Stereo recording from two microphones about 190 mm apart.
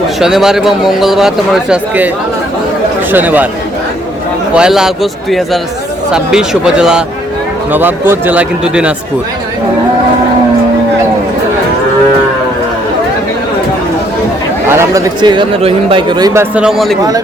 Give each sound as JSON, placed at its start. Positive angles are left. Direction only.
{"t": 0.2, "sound": "a man's voice", "side_deg": -5}
{"t": 3.1, "sound": "speech", "side_deg": -10}
{"t": 4.5, "sound": "a man's voice", "side_deg": -5}
{"t": 6.1, "sound": "a man's voice", "side_deg": -5}
{"t": 14.7, "sound": "speech", "side_deg": -15}